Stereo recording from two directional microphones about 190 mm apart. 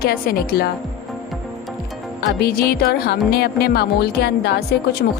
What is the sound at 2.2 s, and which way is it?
A woman's voice, 55° left (ahead or behind).